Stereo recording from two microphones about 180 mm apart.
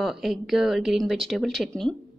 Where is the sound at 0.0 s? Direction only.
Centre (ahead or behind).